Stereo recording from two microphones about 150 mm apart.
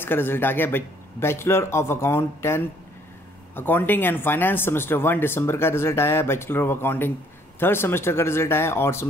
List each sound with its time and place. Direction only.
0.0 s speech: 15° left (ahead or behind)